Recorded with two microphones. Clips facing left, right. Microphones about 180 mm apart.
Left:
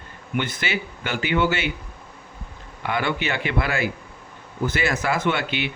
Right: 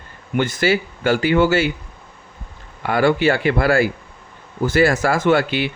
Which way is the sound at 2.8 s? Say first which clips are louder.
Right 9 dB; 45° right (ahead or behind).